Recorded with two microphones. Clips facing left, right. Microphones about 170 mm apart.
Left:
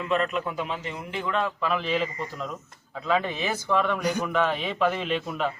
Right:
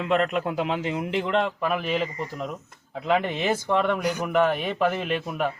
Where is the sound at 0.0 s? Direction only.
70° right (ahead or behind); by 1.2 s 90° right.